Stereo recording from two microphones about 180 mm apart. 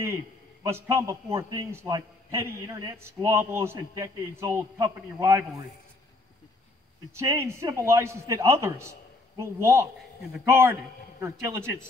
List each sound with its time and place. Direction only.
0.7 s a man's voice: 15° right (ahead or behind)
7.2 s a man's voice: 15° right (ahead or behind)